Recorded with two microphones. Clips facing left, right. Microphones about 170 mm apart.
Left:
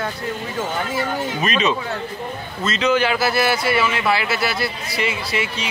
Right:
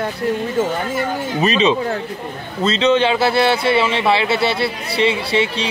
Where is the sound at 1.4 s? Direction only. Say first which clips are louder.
Right 6 dB; 30° right (ahead or behind).